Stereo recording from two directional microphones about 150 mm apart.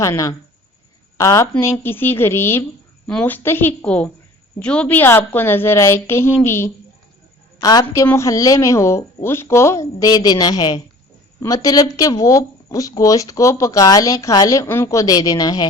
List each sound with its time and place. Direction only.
0.0 s a woman's voice: 20° left (ahead or behind)
7.6 s speech: 25° left (ahead or behind)